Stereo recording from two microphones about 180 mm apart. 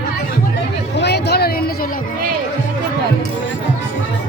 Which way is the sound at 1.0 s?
65° left (ahead or behind).